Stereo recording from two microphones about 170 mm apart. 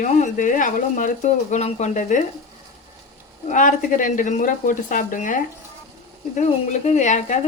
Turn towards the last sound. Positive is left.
turn(degrees=45)  # may be behind; listen again after turning